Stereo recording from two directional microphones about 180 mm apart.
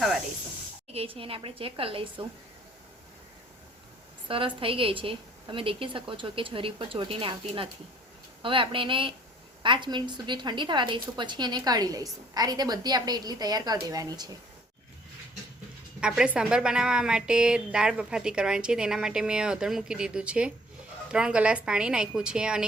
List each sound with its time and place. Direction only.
0.9 s a woman's voice: 30° right (ahead or behind)
4.3 s a woman's voice: 30° right (ahead or behind)
16.0 s a woman's voice: 5° right (ahead or behind)